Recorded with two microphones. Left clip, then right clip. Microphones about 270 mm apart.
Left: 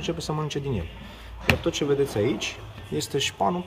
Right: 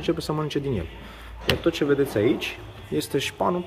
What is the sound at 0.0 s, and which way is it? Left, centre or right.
Speech, centre.